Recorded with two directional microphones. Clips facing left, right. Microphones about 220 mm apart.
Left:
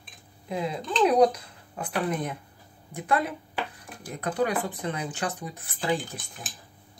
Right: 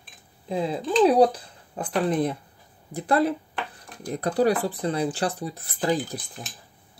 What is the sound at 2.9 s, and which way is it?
Speech, 35° right (ahead or behind).